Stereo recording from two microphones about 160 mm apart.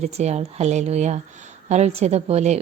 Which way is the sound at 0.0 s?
45° right (ahead or behind).